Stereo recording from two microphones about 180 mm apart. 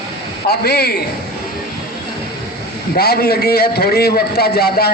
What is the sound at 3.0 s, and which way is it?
A man's voice, 60° left (ahead or behind).